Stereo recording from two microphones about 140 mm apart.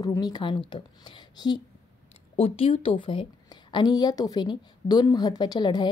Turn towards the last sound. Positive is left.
turn(degrees=30)  # may be behind; listen again after turning